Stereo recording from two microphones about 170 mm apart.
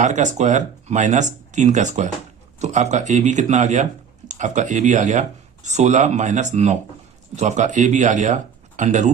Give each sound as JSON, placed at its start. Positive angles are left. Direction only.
{"t": 0.0, "sound": "speech", "side_deg": -45}